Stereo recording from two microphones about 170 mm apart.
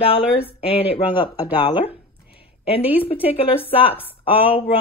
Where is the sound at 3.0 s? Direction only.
35° left (ahead or behind).